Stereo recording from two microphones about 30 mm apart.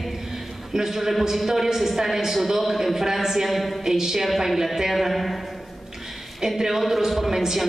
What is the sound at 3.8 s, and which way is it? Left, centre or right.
Speech, centre.